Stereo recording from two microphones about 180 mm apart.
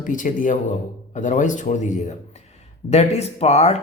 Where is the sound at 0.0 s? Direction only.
45° left (ahead or behind).